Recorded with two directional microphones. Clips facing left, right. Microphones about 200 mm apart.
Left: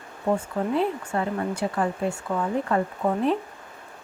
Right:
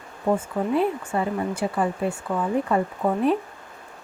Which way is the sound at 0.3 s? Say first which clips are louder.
Right 2 dB; 10° right (ahead or behind).